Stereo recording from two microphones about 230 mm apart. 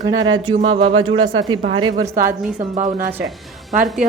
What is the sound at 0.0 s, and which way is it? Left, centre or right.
A woman's voice, centre.